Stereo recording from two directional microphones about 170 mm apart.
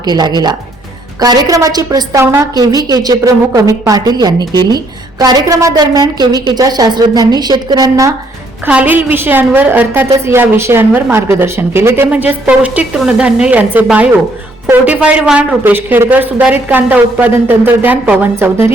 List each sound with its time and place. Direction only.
0.0 s a woman's voice: 25° right (ahead or behind)
8.6 s a woman's voice: 10° right (ahead or behind)